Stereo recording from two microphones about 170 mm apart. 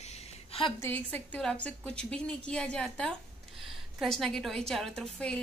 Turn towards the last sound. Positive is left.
turn(degrees=5)  # may be behind; listen again after turning